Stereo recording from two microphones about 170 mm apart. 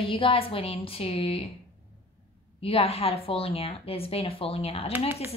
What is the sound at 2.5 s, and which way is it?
A woman's voice, 35° left (ahead or behind).